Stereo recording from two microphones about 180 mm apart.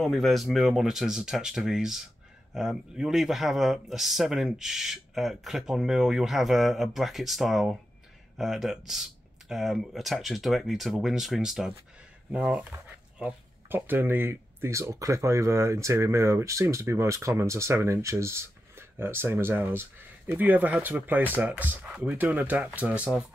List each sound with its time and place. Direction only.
0.0 s speech: centre (ahead or behind)